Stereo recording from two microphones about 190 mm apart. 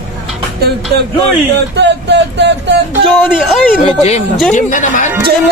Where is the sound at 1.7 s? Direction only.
65° right (ahead or behind).